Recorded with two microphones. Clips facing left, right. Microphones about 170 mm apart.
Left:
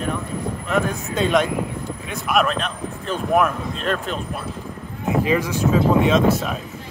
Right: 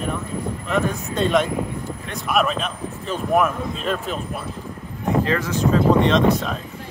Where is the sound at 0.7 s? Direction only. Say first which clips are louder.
Even; centre (ahead or behind).